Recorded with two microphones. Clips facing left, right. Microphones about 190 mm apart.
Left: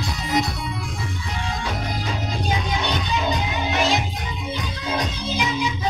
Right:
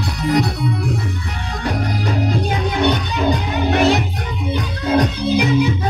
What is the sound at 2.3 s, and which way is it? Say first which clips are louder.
Music: right 5 dB; 60° right (ahead or behind).